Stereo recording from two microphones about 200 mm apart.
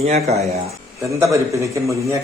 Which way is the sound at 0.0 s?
35° right (ahead or behind).